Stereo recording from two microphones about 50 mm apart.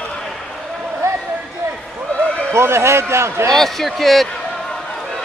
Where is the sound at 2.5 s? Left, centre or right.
Right.